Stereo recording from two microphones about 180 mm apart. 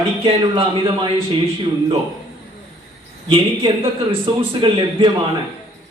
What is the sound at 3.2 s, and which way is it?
A woman's voice, 30° right (ahead or behind).